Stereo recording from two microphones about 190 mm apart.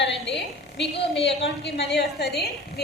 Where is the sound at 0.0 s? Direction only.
65° left (ahead or behind).